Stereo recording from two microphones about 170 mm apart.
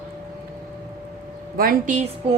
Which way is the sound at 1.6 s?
55° right (ahead or behind).